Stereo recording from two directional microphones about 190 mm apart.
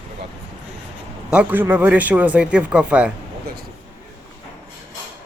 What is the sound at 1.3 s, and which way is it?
A man's voice, 10° right (ahead or behind).